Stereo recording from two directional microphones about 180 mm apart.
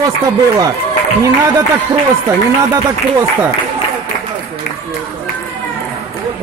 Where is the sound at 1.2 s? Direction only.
15° right (ahead or behind).